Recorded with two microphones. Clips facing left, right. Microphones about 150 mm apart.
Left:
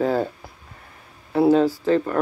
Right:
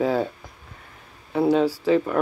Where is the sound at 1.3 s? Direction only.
Centre (ahead or behind).